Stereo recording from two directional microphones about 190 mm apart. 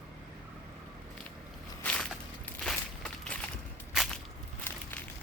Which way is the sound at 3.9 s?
Centre (ahead or behind).